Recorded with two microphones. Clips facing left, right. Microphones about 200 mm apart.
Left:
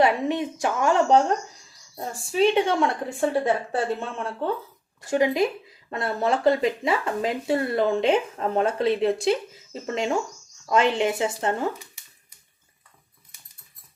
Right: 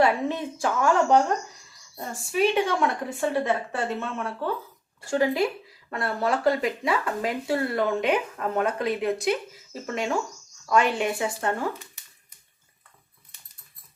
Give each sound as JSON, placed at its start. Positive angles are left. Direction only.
{"t": 0.0, "sound": "speech", "side_deg": 15}
{"t": 2.3, "sound": "speech", "side_deg": 25}